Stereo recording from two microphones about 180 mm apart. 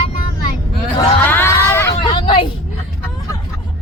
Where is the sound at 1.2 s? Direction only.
10° left (ahead or behind).